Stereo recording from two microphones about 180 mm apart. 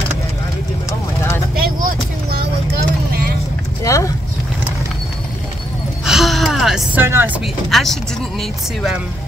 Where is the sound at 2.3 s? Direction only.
55° right (ahead or behind).